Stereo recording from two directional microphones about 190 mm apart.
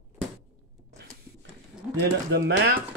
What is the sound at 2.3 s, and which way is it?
Speech, 60° right (ahead or behind).